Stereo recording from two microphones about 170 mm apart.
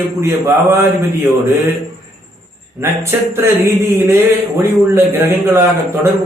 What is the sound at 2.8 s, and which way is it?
Speech, 15° right (ahead or behind).